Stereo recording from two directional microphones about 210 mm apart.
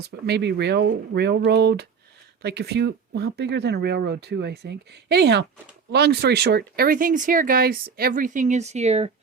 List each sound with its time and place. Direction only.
0.1 s speech: 50° right (ahead or behind); by 9.1 s 30° right (ahead or behind)